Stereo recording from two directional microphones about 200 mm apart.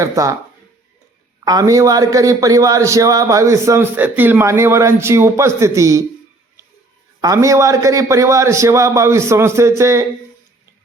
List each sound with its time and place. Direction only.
0.0 s a man's voice: 15° right (ahead or behind)
1.5 s a man's voice: 15° right (ahead or behind)
7.2 s a man's voice: 15° right (ahead or behind)